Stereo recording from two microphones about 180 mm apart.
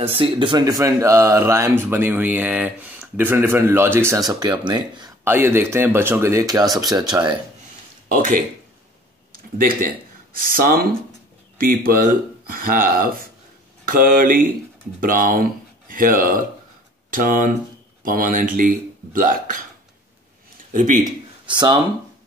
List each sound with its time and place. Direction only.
0.0 s speech: 30° right (ahead or behind)
5.2 s speech: 10° right (ahead or behind)
8.1 s speech: 50° right (ahead or behind)
9.6 s speech: 50° right (ahead or behind)
20.7 s speech: 45° right (ahead or behind)
21.5 s speech: 25° right (ahead or behind)